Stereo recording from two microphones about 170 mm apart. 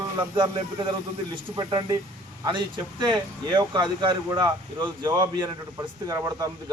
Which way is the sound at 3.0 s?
25° right (ahead or behind).